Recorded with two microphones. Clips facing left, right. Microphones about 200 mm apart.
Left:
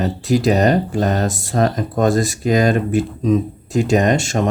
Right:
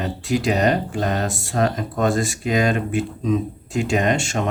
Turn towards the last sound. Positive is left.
turn(degrees=40)  # may be behind; listen again after turning